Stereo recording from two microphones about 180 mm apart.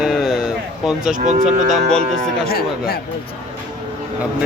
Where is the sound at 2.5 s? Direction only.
55° left (ahead or behind).